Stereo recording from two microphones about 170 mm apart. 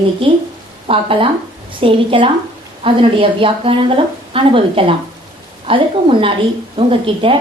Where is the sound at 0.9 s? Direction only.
35° right (ahead or behind).